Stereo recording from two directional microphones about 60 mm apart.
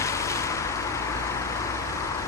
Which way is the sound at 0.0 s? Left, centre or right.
Left.